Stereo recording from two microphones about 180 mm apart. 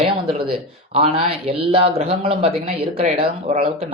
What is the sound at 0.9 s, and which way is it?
A man's voice, 35° right (ahead or behind).